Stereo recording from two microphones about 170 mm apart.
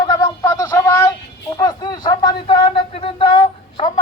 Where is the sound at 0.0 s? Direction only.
20° left (ahead or behind).